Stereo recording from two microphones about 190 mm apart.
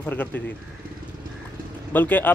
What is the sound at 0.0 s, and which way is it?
Speech, 10° left (ahead or behind).